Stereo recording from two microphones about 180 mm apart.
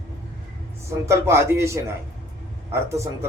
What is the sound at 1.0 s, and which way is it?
Speech, 15° right (ahead or behind).